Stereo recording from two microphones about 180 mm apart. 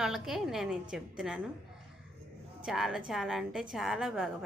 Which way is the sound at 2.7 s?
5° right (ahead or behind).